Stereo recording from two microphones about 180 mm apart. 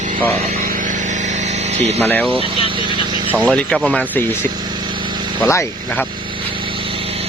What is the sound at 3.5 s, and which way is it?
Speech, 5° left (ahead or behind).